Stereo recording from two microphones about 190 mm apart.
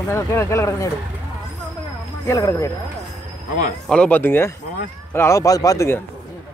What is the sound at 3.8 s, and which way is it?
Speech, 5° left (ahead or behind).